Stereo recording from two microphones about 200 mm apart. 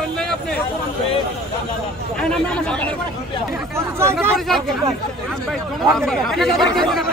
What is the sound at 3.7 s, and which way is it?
Speech, 15° right (ahead or behind).